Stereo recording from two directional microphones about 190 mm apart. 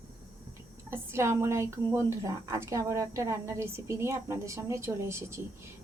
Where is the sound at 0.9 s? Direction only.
15° right (ahead or behind).